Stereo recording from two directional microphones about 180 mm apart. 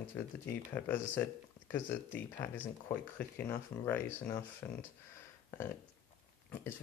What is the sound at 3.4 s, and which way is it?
Speech, 10° left (ahead or behind).